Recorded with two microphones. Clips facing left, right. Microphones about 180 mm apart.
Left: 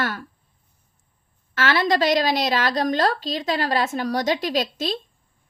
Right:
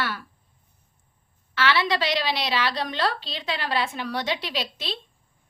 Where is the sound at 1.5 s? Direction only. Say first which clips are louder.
Left 3 dB; 45° left (ahead or behind).